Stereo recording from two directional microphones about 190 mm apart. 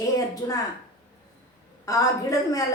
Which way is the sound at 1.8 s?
20° left (ahead or behind).